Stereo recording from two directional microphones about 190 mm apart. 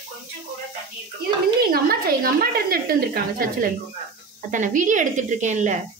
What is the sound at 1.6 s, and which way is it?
A woman's voice, 50° right (ahead or behind).